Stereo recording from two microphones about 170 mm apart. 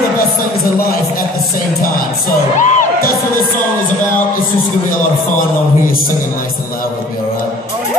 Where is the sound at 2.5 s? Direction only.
45° left (ahead or behind).